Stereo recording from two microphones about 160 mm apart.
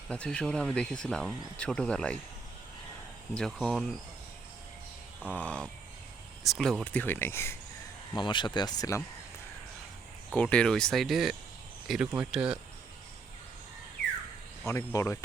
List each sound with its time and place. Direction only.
0.1 s speech: 5° left (ahead or behind)
3.3 s speech: 5° left (ahead or behind)
5.3 s speech: 10° left (ahead or behind)
8.1 s speech: 30° left (ahead or behind)
10.3 s speech: 5° left (ahead or behind)
14.7 s speech: 15° left (ahead or behind)